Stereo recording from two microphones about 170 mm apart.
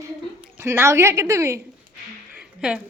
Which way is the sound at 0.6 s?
15° right (ahead or behind).